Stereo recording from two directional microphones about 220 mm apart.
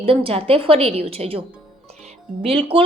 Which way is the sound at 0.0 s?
25° right (ahead or behind).